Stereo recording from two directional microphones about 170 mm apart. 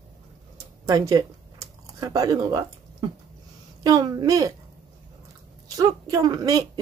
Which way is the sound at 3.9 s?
20° right (ahead or behind).